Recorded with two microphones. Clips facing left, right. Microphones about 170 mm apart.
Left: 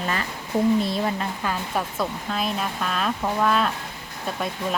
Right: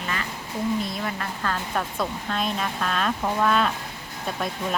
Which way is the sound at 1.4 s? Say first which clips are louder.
Left 1 dB; 10° left (ahead or behind).